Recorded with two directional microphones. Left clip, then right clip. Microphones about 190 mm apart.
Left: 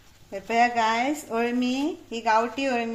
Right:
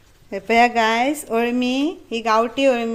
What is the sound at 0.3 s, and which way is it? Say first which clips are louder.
Speech: right 6 dB; 50° right (ahead or behind).